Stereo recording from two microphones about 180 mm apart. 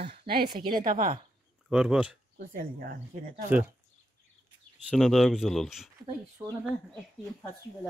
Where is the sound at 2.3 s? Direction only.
55° right (ahead or behind).